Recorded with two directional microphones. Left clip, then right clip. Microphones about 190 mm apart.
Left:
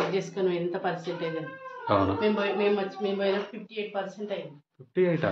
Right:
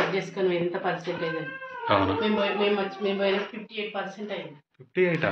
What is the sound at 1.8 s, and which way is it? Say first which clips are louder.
Speech: right 1 dB; 25° left (ahead or behind).